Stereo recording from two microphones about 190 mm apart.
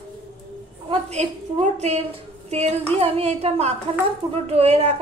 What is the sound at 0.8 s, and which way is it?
A woman's voice, 35° right (ahead or behind).